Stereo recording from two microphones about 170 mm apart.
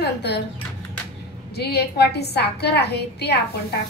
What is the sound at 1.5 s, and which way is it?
A woman's voice, 70° left (ahead or behind).